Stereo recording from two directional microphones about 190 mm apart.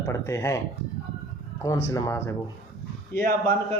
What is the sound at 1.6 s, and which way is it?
Speech, 20° left (ahead or behind).